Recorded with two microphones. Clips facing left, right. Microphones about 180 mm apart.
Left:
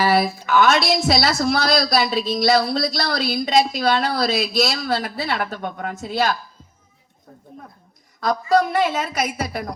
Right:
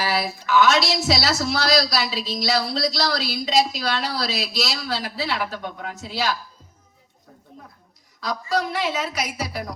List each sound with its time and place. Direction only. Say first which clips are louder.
0.0 s speech: left 6 dB; 55° left (ahead or behind)
8.2 s speech: left 7 dB; 50° left (ahead or behind)